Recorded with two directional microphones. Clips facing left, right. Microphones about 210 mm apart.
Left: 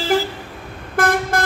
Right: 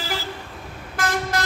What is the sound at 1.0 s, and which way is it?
Vehicle, 55° left (ahead or behind).